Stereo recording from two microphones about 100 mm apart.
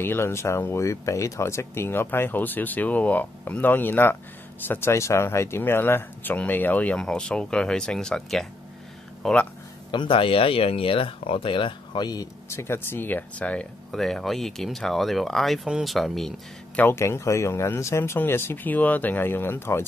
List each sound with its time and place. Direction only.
0.0 s speech: 25° left (ahead or behind)
9.8 s speech: 55° left (ahead or behind)
12.4 s speech: 25° left (ahead or behind); by 16.3 s centre (ahead or behind)
16.7 s speech: 25° left (ahead or behind)